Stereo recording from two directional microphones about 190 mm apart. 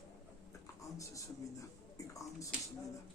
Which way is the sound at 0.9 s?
15° left (ahead or behind).